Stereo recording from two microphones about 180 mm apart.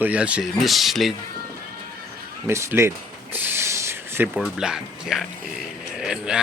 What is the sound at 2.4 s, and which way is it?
Speech, 15° right (ahead or behind).